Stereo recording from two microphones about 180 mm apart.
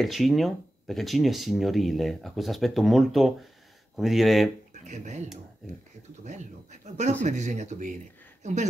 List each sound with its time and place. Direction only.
0.0 s speech: centre (ahead or behind)
4.8 s speech: 40° right (ahead or behind)
6.2 s speech: 40° right (ahead or behind)